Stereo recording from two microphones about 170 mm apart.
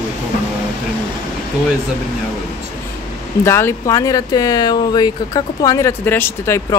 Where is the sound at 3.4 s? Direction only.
15° left (ahead or behind).